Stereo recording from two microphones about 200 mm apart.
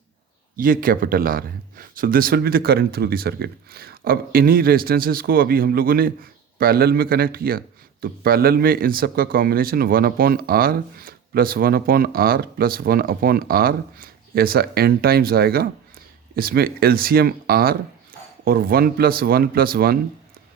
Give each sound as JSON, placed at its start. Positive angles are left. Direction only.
{"t": 0.5, "sound": "speech", "side_deg": -45}